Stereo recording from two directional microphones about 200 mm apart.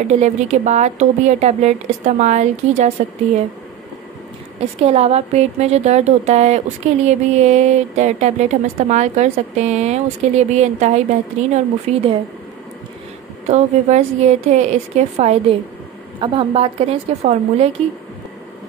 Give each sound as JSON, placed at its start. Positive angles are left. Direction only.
{"t": 0.1, "sound": "a woman's voice", "side_deg": -35}
{"t": 4.8, "sound": "a woman's voice", "side_deg": -30}
{"t": 13.5, "sound": "a woman's voice", "side_deg": -35}